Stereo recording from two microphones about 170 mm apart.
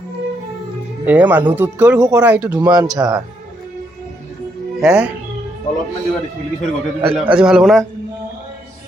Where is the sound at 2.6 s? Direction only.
25° right (ahead or behind).